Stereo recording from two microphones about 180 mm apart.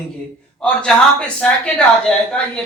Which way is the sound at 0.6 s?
5° left (ahead or behind).